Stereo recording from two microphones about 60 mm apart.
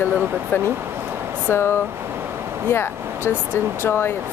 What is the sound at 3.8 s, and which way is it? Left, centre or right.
Speech, left.